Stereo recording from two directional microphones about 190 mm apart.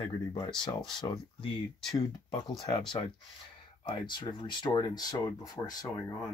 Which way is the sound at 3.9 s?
25° left (ahead or behind).